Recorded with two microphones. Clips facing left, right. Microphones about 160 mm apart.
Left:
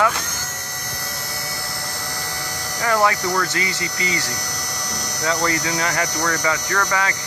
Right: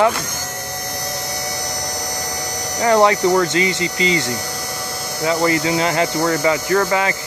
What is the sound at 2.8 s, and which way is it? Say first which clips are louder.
Speech: right 6 dB; 25° right (ahead or behind).